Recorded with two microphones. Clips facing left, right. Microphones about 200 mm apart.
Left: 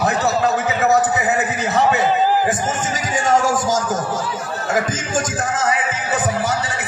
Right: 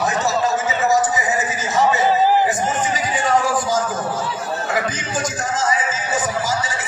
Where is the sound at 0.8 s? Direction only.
60° left (ahead or behind).